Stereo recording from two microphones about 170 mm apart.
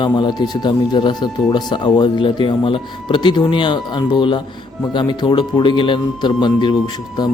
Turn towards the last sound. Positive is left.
turn(degrees=25)  # may be behind; listen again after turning